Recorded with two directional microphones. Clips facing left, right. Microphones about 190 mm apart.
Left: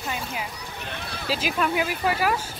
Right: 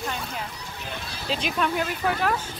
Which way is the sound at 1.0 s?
60° left (ahead or behind).